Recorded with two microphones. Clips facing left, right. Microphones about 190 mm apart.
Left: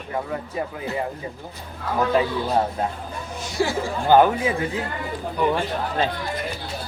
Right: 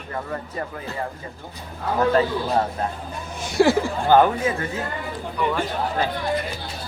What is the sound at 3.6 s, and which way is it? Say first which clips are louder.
Speech: right 7 dB; 65° right (ahead or behind).